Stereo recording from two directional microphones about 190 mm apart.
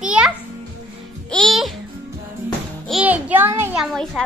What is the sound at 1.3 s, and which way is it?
Music, centre (ahead or behind).